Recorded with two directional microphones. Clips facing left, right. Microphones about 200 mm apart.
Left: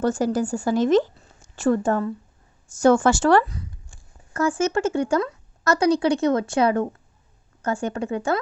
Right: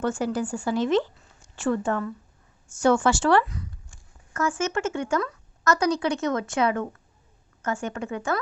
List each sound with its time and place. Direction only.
0.0 s speech: 40° left (ahead or behind)